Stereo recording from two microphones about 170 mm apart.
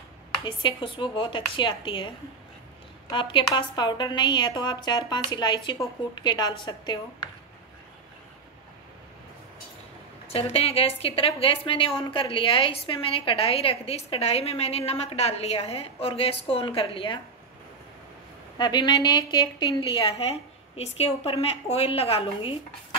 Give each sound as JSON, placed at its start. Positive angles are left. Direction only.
{"t": 0.5, "sound": "a woman's voice", "side_deg": 30}
{"t": 10.3, "sound": "a woman's voice", "side_deg": 35}
{"t": 18.6, "sound": "a woman's voice", "side_deg": 25}